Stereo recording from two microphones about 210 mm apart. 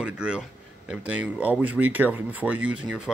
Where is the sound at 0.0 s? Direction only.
5° right (ahead or behind).